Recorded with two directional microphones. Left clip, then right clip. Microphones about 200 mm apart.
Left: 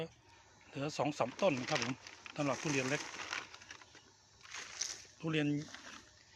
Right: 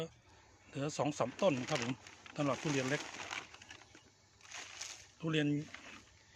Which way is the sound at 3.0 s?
35° right (ahead or behind).